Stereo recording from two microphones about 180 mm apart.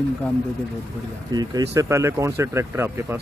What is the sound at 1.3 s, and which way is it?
Speech, 20° right (ahead or behind).